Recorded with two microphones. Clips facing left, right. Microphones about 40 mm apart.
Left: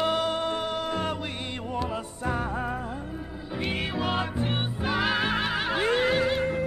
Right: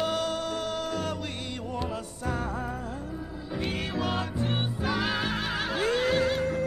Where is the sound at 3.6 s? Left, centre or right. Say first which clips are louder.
Left 2 dB; left.